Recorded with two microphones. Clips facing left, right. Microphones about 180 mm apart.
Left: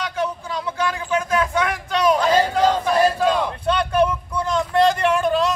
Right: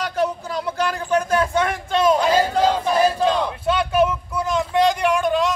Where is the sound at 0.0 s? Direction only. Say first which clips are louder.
Right 3 dB; 40° right (ahead or behind).